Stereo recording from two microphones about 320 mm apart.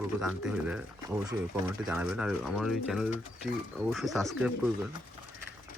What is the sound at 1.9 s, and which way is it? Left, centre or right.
Speech, centre.